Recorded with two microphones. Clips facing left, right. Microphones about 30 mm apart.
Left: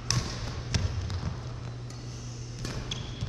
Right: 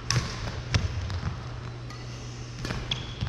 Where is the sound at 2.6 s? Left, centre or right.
Right.